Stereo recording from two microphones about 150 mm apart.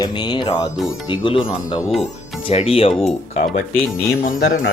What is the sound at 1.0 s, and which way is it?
Speech, 35° left (ahead or behind).